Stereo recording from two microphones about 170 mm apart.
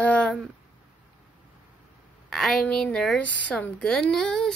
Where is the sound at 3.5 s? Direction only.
5° left (ahead or behind).